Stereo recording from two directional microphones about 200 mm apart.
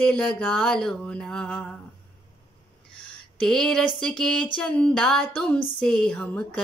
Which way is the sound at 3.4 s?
5° left (ahead or behind).